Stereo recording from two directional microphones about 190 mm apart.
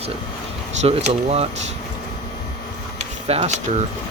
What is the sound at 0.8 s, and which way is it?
Speech, 35° right (ahead or behind).